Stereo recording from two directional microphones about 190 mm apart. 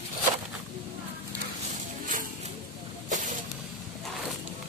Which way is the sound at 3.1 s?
45° right (ahead or behind).